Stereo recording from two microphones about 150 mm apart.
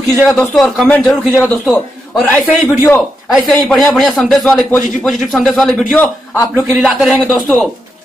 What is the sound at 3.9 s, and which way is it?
A man's voice, centre (ahead or behind).